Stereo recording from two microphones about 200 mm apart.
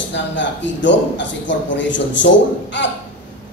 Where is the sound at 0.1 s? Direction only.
65° left (ahead or behind).